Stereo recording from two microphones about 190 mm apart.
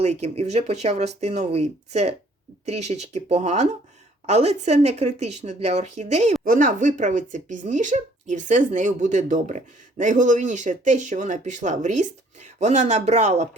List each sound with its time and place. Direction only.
0.0 s speech: 35° right (ahead or behind)